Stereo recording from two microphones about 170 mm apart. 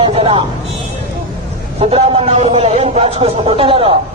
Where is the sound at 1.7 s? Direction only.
35° right (ahead or behind).